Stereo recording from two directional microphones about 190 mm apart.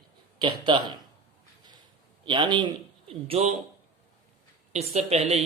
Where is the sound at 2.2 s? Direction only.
25° right (ahead or behind).